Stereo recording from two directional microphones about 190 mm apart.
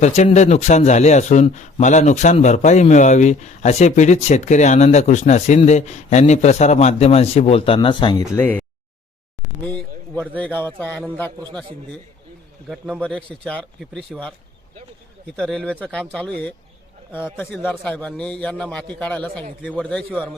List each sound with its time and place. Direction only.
0.0 s a man's voice: 35° left (ahead or behind)
8.4 s a man's voice: 10° left (ahead or behind)
10.2 s a man's voice: 5° left (ahead or behind)
12.6 s speech: 5° right (ahead or behind)
13.0 s a man's voice: 5° left (ahead or behind)
15.4 s a man's voice: 5° left (ahead or behind)